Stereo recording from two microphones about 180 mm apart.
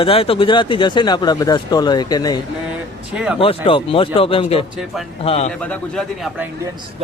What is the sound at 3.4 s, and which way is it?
A man's voice, 30° left (ahead or behind).